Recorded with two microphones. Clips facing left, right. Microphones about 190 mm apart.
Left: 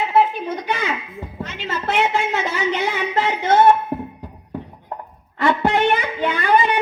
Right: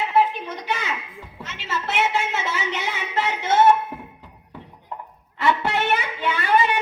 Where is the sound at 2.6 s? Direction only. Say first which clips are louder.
Left 7 dB; 50° left (ahead or behind).